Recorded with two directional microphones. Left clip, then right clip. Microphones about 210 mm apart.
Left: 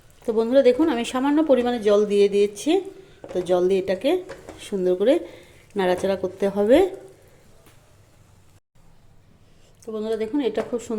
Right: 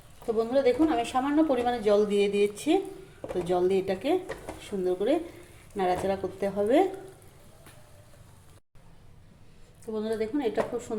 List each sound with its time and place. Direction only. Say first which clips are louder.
0.3 s speech: left 7 dB; 40° left (ahead or behind)
9.8 s speech: left 4 dB; 35° left (ahead or behind)